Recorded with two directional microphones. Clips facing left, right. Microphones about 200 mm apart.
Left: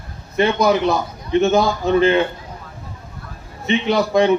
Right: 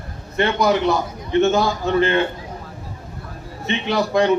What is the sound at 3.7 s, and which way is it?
Speech, 20° left (ahead or behind).